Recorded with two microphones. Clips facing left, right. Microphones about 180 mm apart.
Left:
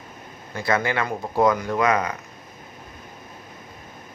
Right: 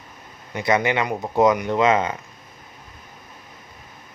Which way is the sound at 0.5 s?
20° right (ahead or behind).